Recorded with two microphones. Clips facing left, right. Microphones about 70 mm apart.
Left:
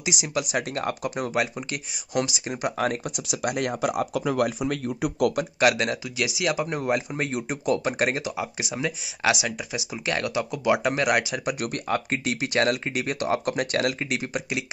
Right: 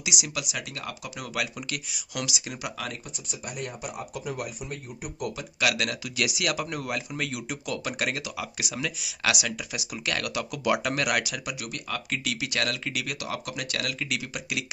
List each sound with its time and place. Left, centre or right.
0.0 s speech: left
3.1 s speech: left
5.6 s speech: left
6.1 s speech: centre
11.4 s speech: left